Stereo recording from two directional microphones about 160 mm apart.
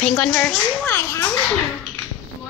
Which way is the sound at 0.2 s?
10° left (ahead or behind).